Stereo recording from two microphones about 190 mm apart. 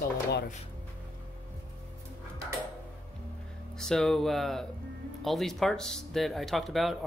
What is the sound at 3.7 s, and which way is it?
Speech, 5° left (ahead or behind).